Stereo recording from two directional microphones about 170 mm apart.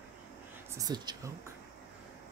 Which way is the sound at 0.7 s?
25° right (ahead or behind).